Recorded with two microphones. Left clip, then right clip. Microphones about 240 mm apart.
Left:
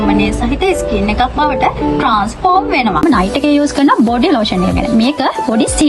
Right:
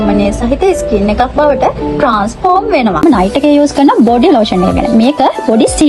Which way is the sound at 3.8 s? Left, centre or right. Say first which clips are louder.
Right 3 dB; centre.